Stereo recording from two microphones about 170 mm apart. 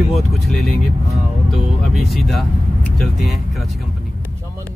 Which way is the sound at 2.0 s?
Centre (ahead or behind).